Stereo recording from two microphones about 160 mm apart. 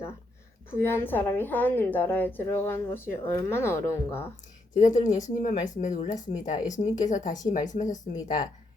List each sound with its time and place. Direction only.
0.7 s a woman's voice: 15° left (ahead or behind)
4.7 s speech: 50° left (ahead or behind)